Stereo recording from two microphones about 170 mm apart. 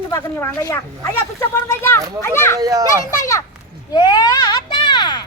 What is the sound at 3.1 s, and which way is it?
Speech, 20° left (ahead or behind).